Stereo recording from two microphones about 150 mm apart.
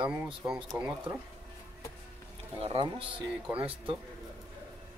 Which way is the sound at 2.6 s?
40° right (ahead or behind).